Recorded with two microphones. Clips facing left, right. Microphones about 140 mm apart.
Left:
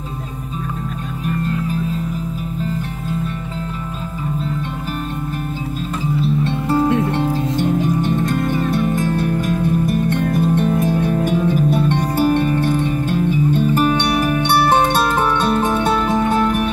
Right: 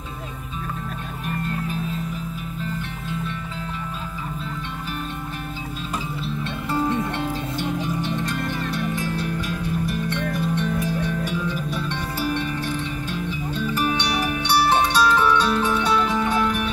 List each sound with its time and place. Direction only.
7.1 s music: 40° left (ahead or behind)